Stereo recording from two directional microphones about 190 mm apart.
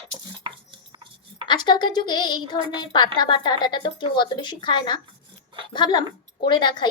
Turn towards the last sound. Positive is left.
turn(degrees=25)  # may be behind; listen again after turning